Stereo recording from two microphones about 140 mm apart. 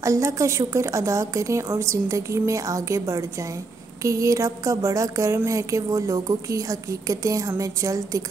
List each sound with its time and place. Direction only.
0.0 s a woman's voice: 20° right (ahead or behind)